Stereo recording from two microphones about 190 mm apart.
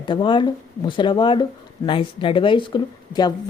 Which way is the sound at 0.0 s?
25° left (ahead or behind).